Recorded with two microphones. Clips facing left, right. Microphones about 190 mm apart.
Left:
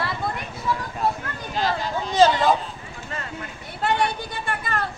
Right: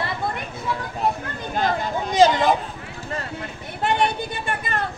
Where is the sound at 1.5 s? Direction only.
50° right (ahead or behind).